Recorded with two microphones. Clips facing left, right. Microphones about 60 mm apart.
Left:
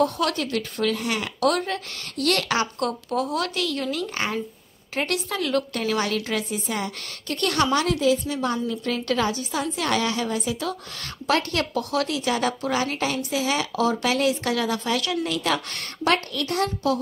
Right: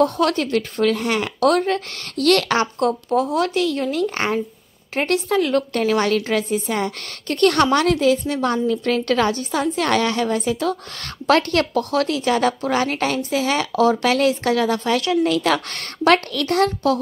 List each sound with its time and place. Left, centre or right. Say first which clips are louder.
0.0 s a woman's voice: right 5 dB; right
2.6 s speech: right 6 dB; right
4.0 s a woman's voice: right 6 dB; right